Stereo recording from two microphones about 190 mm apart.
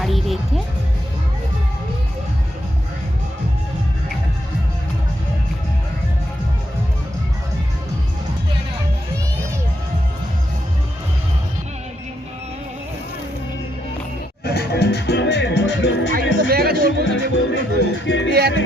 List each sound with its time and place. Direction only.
0.0 s music: centre (ahead or behind)
14.4 s music: 55° left (ahead or behind)
16.5 s music: 55° right (ahead or behind)
16.7 s music: 80° left